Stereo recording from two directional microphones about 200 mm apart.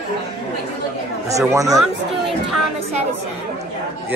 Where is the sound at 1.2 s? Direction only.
15° right (ahead or behind).